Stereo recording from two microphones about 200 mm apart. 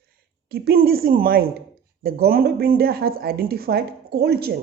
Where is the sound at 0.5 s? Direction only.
50° right (ahead or behind).